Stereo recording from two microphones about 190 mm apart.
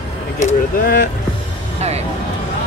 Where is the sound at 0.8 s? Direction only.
50° left (ahead or behind).